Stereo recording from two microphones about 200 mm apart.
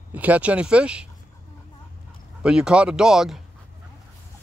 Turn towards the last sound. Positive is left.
turn(degrees=0)  # may be behind; listen again after turning